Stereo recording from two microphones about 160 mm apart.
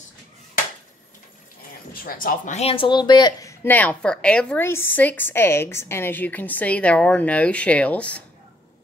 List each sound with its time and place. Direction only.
2.0 s speech: 65° left (ahead or behind); by 8.2 s 10° left (ahead or behind)